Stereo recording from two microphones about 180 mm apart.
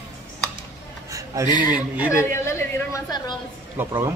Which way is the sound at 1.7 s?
10° right (ahead or behind).